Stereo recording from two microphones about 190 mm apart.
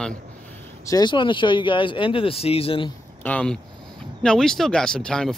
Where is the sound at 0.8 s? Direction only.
20° left (ahead or behind).